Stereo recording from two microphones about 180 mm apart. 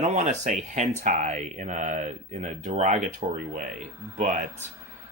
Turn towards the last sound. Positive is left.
turn(degrees=-45)  # may be behind; listen again after turning